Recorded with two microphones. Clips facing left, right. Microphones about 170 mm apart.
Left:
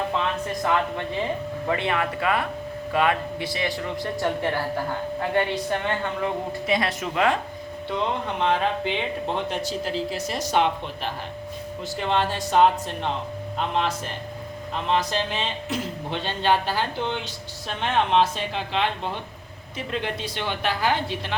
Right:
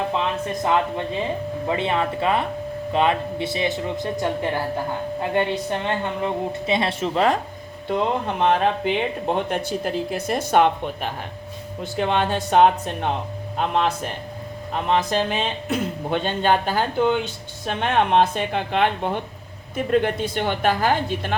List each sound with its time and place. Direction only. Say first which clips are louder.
0.2 s a woman's voice: right 2 dB; 20° right (ahead or behind)
7.9 s speech: right 4 dB; 45° right (ahead or behind)